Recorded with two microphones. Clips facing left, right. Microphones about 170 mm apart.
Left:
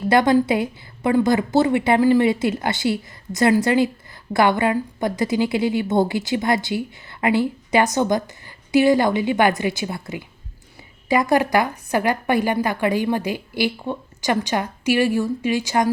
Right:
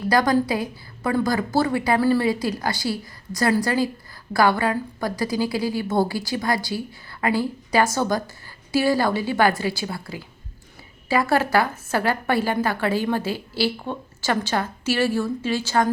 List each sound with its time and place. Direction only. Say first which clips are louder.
0.1 s a woman's voice: left 4 dB; 25° left (ahead or behind)